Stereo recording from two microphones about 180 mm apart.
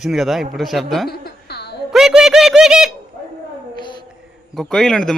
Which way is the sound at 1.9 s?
Centre (ahead or behind).